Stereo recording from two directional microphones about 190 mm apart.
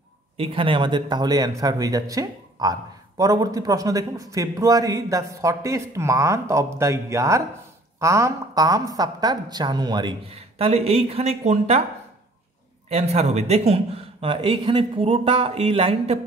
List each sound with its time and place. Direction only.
0.4 s a woman's voice: 25° right (ahead or behind)
12.9 s a man's voice: 35° right (ahead or behind)